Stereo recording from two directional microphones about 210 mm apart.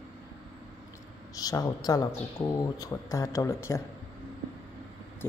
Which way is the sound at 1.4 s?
15° left (ahead or behind).